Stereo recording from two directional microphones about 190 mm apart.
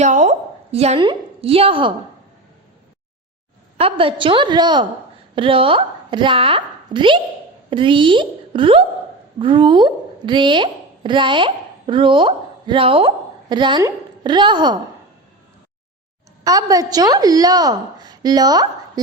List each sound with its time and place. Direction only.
0.0 s a woman's voice: 40° right (ahead or behind)
3.8 s a woman's voice: 30° right (ahead or behind)
16.4 s a woman's voice: 20° right (ahead or behind)